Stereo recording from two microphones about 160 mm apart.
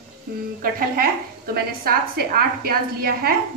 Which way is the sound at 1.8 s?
70° right (ahead or behind).